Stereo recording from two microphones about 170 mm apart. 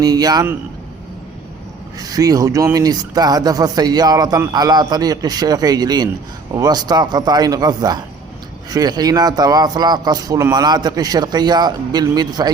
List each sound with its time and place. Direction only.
0.0 s speech: 20° right (ahead or behind)
2.0 s speech: 20° right (ahead or behind)